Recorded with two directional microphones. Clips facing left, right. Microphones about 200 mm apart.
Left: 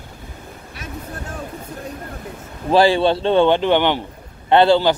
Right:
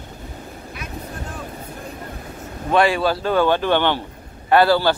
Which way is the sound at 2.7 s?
30° left (ahead or behind).